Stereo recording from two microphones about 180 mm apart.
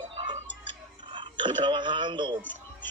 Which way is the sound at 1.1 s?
25° right (ahead or behind).